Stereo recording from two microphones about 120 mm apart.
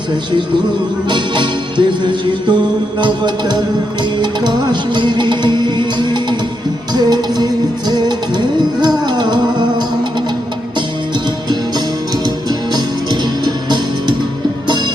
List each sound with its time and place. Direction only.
1.0 s music: 40° right (ahead or behind)
12.5 s music: 35° right (ahead or behind)